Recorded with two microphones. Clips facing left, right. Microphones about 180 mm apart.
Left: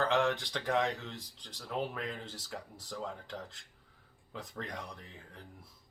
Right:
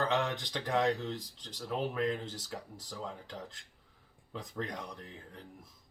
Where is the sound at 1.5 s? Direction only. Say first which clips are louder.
Right 3 dB; centre (ahead or behind).